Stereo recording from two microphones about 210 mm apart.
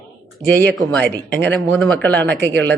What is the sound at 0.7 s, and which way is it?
Speech, 5° left (ahead or behind).